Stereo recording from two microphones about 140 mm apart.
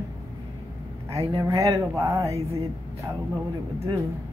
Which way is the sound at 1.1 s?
45° right (ahead or behind).